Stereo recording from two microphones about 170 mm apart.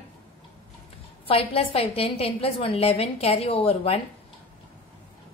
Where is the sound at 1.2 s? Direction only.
35° left (ahead or behind).